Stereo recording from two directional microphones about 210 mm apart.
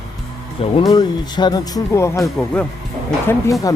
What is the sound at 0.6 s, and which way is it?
Speech, 20° left (ahead or behind).